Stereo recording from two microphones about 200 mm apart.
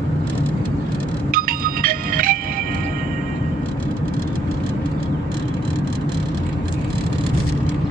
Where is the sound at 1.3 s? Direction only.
45° right (ahead or behind).